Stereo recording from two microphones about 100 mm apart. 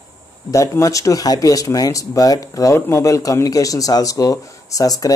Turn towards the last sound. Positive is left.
turn(degrees=40)  # may be behind; listen again after turning